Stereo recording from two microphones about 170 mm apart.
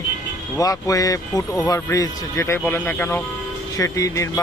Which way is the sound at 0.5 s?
20° left (ahead or behind).